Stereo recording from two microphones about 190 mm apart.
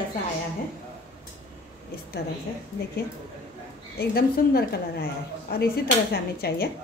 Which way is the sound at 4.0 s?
55° left (ahead or behind).